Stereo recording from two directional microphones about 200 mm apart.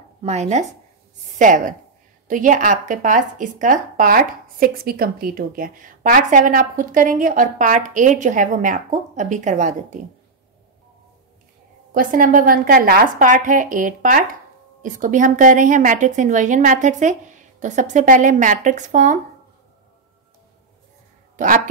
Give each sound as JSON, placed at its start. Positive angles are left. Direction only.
{"t": 0.2, "sound": "speech", "side_deg": -35}
{"t": 11.9, "sound": "a woman's voice", "side_deg": -45}